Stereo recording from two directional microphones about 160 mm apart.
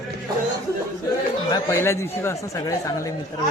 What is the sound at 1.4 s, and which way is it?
A man's voice, 25° left (ahead or behind).